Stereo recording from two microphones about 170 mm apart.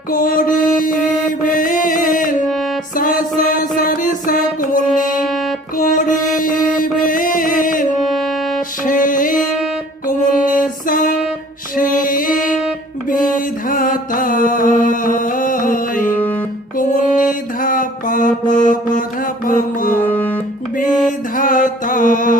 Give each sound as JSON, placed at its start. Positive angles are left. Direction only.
{"t": 0.1, "sound": "mantra", "side_deg": 55}
{"t": 2.9, "sound": "music", "side_deg": 55}
{"t": 5.2, "sound": "music", "side_deg": 0}
{"t": 5.7, "sound": "music", "side_deg": 50}
{"t": 8.0, "sound": "music", "side_deg": 0}
{"t": 8.8, "sound": "music", "side_deg": 50}
{"t": 16.7, "sound": "mantra", "side_deg": 50}
{"t": 19.5, "sound": "music", "side_deg": 55}
{"t": 20.1, "sound": "music", "side_deg": 10}
{"t": 21.3, "sound": "music", "side_deg": 50}